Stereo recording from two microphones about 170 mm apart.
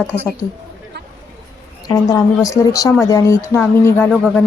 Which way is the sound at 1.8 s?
20° left (ahead or behind).